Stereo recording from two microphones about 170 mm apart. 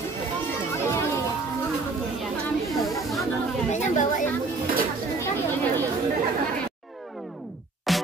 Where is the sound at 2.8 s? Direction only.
Centre (ahead or behind).